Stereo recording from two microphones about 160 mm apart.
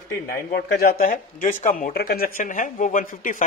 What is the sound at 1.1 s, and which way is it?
Speech, 50° left (ahead or behind).